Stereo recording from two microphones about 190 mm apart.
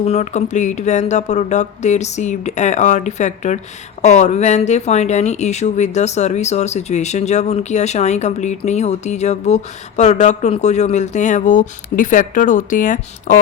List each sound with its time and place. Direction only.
0.0 s speech: 35° left (ahead or behind)